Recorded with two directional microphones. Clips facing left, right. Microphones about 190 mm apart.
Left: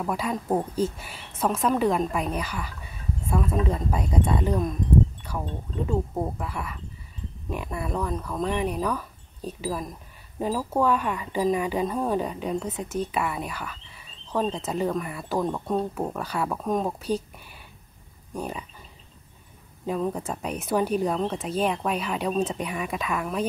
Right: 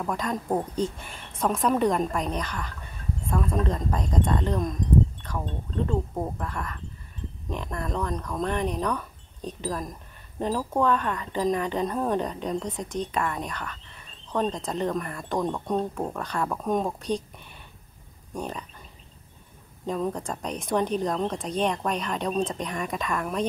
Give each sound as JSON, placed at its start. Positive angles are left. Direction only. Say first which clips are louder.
{"t": 0.0, "sound": "speech", "louder": "left 1 dB", "side_deg": 5}
{"t": 18.3, "sound": "speech", "louder": "left 1 dB", "side_deg": 10}
{"t": 19.9, "sound": "speech", "louder": "left 1 dB", "side_deg": 5}